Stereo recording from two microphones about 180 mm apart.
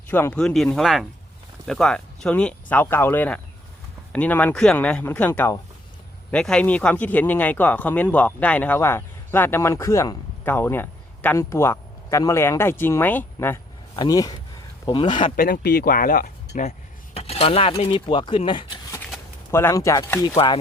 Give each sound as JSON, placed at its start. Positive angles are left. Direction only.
{"t": 0.1, "sound": "speech", "side_deg": 10}
{"t": 13.9, "sound": "speech", "side_deg": 20}
{"t": 15.4, "sound": "speech", "side_deg": 60}
{"t": 17.2, "sound": "speech", "side_deg": 35}
{"t": 19.5, "sound": "speech", "side_deg": 15}